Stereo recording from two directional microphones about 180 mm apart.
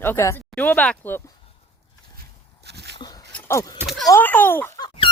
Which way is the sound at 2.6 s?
65° right (ahead or behind).